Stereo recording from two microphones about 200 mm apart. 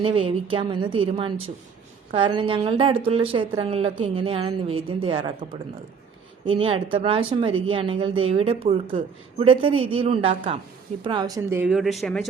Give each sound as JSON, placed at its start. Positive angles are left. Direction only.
{"t": 0.0, "sound": "speech", "side_deg": -25}